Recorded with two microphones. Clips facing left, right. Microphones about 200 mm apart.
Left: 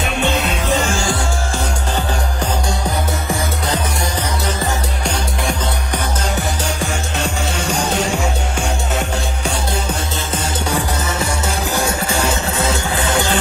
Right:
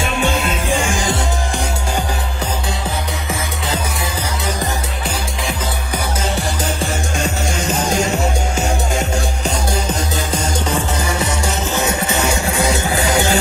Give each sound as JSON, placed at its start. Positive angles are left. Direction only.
{"t": 0.0, "sound": "music", "side_deg": -45}
{"t": 0.7, "sound": "music", "side_deg": -15}
{"t": 6.3, "sound": "music", "side_deg": -5}
{"t": 11.8, "sound": "music", "side_deg": -10}